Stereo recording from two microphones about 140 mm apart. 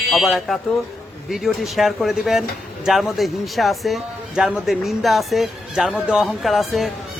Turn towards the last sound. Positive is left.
turn(degrees=0)  # may be behind; listen again after turning